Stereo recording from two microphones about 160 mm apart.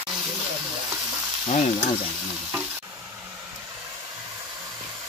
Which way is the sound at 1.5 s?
45° left (ahead or behind).